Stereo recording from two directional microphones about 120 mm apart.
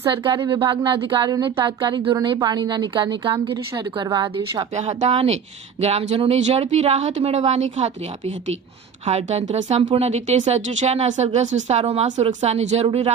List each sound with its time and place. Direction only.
0.1 s a woman's voice: 40° right (ahead or behind)
4.7 s speech: 70° right (ahead or behind)